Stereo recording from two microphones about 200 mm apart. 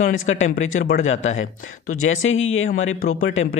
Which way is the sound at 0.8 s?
40° left (ahead or behind).